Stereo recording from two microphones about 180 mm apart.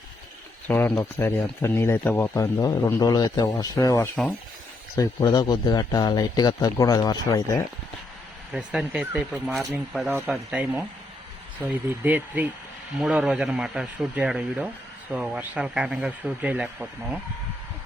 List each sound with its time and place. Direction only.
0.7 s a man's voice: 10° left (ahead or behind)
8.5 s speech: 5° right (ahead or behind)